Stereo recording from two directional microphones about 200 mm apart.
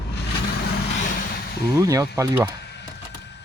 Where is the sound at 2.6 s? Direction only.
60° left (ahead or behind).